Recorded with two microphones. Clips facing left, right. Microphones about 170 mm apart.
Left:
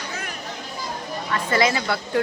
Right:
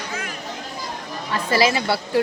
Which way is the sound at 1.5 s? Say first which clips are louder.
Right 2 dB; 30° right (ahead or behind).